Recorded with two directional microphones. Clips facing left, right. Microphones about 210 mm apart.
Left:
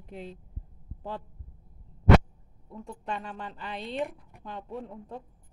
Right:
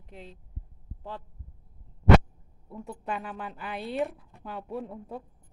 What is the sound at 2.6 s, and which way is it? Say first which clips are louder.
A woman's voice: right 1 dB; 5° right (ahead or behind).